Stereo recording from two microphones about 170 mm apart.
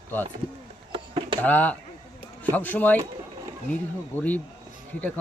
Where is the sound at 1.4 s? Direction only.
10° left (ahead or behind).